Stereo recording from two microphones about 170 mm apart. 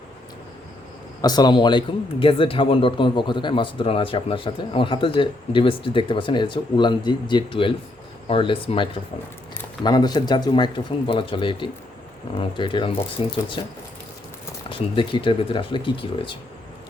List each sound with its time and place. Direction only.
1.2 s speech: 25° left (ahead or behind)
14.7 s speech: 30° left (ahead or behind)